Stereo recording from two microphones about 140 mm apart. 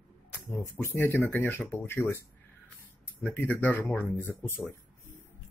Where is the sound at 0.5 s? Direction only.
20° left (ahead or behind).